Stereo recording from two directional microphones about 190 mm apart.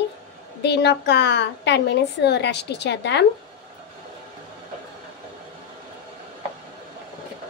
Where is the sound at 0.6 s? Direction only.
65° left (ahead or behind).